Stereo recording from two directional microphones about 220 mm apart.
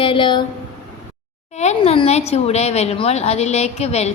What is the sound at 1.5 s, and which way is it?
A woman's voice, 30° left (ahead or behind).